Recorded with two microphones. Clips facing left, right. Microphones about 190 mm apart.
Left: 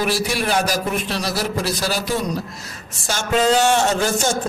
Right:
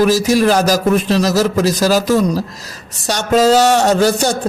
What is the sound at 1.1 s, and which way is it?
Speech, 90° right.